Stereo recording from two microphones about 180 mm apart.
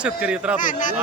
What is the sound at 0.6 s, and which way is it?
Speech, 45° left (ahead or behind).